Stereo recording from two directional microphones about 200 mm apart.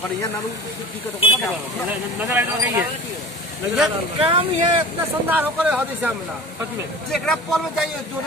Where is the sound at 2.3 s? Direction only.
10° right (ahead or behind).